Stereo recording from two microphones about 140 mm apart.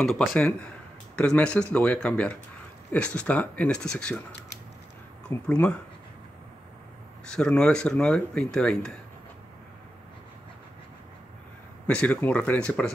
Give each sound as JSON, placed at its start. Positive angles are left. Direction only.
{"t": 0.0, "sound": "speech", "side_deg": 0}
{"t": 5.5, "sound": "speech", "side_deg": 10}
{"t": 7.2, "sound": "speech", "side_deg": 5}
{"t": 11.9, "sound": "speech", "side_deg": 5}